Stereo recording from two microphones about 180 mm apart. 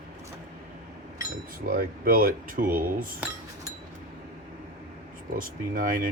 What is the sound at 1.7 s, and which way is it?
Speech, 55° right (ahead or behind).